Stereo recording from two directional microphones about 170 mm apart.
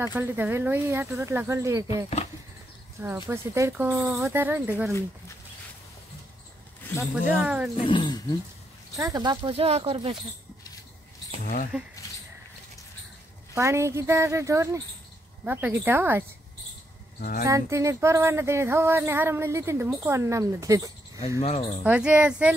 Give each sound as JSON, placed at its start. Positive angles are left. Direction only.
{"t": 0.0, "sound": "speech", "side_deg": -15}
{"t": 3.0, "sound": "speech", "side_deg": -15}
{"t": 7.0, "sound": "speech", "side_deg": -5}
{"t": 7.7, "sound": "speech", "side_deg": 30}
{"t": 8.9, "sound": "speech", "side_deg": -20}
{"t": 13.6, "sound": "speech", "side_deg": -15}
{"t": 17.2, "sound": "speech", "side_deg": 60}
{"t": 17.5, "sound": "speech", "side_deg": -20}
{"t": 21.4, "sound": "speech", "side_deg": 35}
{"t": 21.8, "sound": "speech", "side_deg": -5}